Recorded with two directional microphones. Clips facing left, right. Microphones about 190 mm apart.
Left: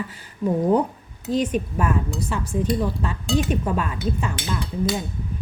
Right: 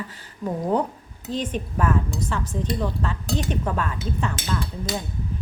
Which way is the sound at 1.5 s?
10° left (ahead or behind).